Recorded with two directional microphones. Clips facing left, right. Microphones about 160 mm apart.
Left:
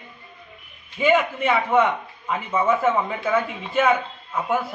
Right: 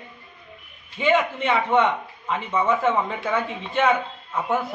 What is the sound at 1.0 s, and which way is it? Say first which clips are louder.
A man's voice: left 1 dB; 5° left (ahead or behind).